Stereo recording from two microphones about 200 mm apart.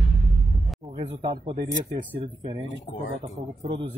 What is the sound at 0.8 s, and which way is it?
A man's voice, 25° right (ahead or behind).